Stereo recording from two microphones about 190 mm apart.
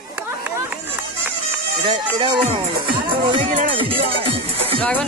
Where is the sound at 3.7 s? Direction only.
30° right (ahead or behind).